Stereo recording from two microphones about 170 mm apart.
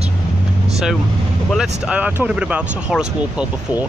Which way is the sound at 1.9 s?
10° right (ahead or behind).